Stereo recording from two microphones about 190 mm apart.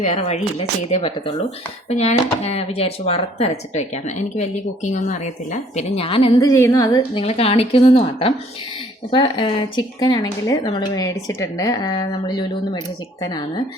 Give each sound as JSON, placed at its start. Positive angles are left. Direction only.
{"t": 0.0, "sound": "speech", "side_deg": 35}
{"t": 6.5, "sound": "speech", "side_deg": 15}